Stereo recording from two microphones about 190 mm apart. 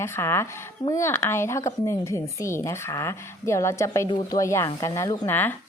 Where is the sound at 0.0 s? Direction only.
15° left (ahead or behind).